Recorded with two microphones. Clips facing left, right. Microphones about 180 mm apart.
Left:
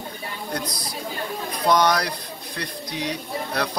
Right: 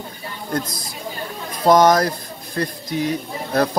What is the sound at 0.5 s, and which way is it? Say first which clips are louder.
Speech: right 6 dB; 50° right (ahead or behind).